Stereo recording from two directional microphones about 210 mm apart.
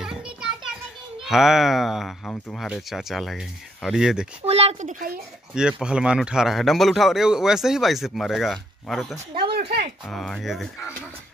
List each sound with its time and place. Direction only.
0.0 s children playing: 5° right (ahead or behind)
1.2 s speech: centre (ahead or behind)
4.5 s speech: 30° right (ahead or behind)
5.5 s speech: 5° right (ahead or behind)
9.5 s speech: 50° right (ahead or behind)
10.0 s speech: 5° left (ahead or behind)